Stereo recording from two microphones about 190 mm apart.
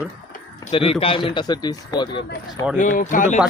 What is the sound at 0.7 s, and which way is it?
A man's voice, 30° left (ahead or behind).